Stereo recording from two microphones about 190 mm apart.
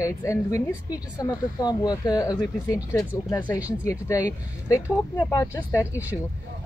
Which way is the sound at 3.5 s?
5° right (ahead or behind).